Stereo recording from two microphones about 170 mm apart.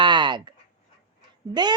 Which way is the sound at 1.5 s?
25° right (ahead or behind).